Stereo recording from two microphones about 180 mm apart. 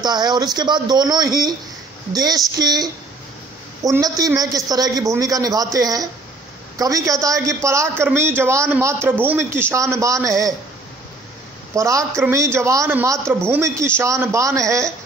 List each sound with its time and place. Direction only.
0.0 s a woman's voice: 25° right (ahead or behind)
11.7 s a woman's voice: 20° right (ahead or behind)